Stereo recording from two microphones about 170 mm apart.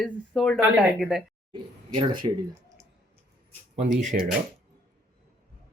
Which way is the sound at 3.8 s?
45° right (ahead or behind).